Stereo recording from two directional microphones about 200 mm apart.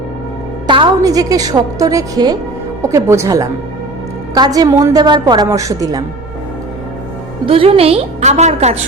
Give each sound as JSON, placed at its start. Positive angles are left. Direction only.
{"t": 0.7, "sound": "a woman's voice", "side_deg": -20}
{"t": 7.4, "sound": "a woman's voice", "side_deg": -25}